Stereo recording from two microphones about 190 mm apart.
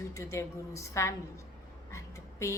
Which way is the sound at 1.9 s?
15° left (ahead or behind).